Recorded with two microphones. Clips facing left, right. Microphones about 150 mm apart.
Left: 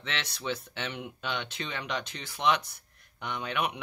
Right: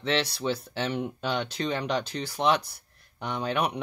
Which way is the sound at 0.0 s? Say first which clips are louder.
Right 9 dB; 35° right (ahead or behind).